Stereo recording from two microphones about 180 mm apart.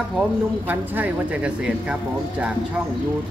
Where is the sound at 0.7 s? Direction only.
10° right (ahead or behind).